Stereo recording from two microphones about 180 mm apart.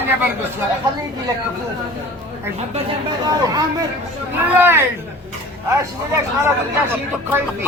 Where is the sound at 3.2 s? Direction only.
20° right (ahead or behind).